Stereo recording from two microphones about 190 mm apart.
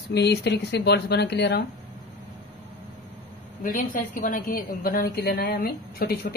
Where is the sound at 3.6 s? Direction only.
45° left (ahead or behind).